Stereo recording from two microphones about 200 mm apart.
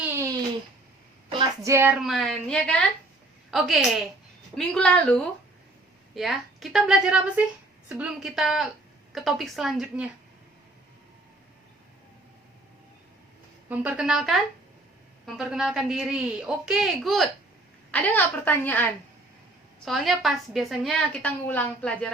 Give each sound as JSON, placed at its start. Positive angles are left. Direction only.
{"t": 0.0, "sound": "a sound", "side_deg": -15}
{"t": 1.3, "sound": "a woman's voice", "side_deg": -20}
{"t": 13.7, "sound": "a woman's voice", "side_deg": -5}